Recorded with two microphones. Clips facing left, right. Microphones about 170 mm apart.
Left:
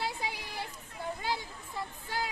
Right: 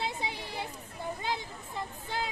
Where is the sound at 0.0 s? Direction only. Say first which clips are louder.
Right 1 dB; 20° right (ahead or behind).